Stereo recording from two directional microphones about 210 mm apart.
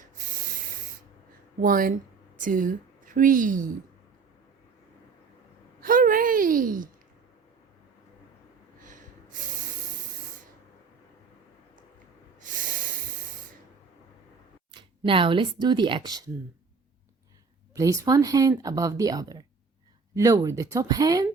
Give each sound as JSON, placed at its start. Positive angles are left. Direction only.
{"t": 1.6, "sound": "a woman's voice", "side_deg": -40}
{"t": 5.8, "sound": "a sound", "side_deg": -40}
{"t": 8.8, "sound": "snort", "side_deg": -40}
{"t": 12.4, "sound": "snort", "side_deg": -40}
{"t": 14.7, "sound": "speech", "side_deg": -25}
{"t": 17.7, "sound": "speech", "side_deg": -15}